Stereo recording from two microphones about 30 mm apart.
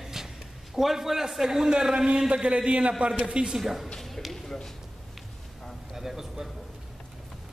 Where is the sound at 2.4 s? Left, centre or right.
Right.